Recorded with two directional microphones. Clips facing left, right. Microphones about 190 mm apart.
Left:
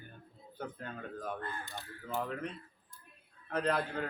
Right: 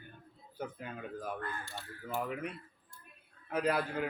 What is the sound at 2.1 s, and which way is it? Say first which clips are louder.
Speech: even; 5° right (ahead or behind).